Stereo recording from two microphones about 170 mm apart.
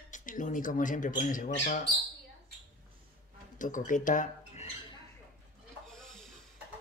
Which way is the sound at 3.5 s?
50° left (ahead or behind).